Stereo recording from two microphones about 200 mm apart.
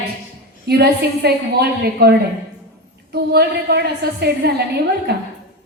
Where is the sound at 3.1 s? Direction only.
55° right (ahead or behind).